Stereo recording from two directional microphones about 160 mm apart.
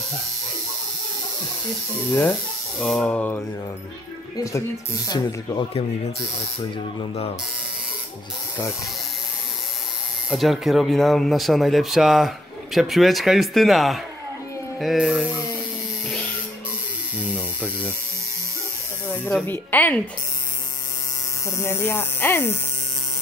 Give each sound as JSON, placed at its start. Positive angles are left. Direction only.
{"t": 2.8, "sound": "speech", "side_deg": 5}
{"t": 4.4, "sound": "speech", "side_deg": 20}
{"t": 10.3, "sound": "speech", "side_deg": 0}
{"t": 17.3, "sound": "a sound", "side_deg": -10}
{"t": 19.0, "sound": "speech", "side_deg": 10}
{"t": 21.5, "sound": "speech", "side_deg": 15}